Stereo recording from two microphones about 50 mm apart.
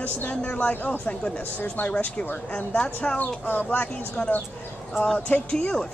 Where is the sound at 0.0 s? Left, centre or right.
Left.